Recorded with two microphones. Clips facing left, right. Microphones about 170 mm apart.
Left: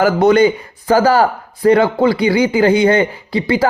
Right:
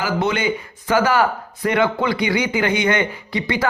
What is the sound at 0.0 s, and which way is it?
Speech, 40° left (ahead or behind).